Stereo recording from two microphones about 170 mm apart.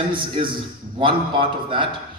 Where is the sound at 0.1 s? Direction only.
30° right (ahead or behind).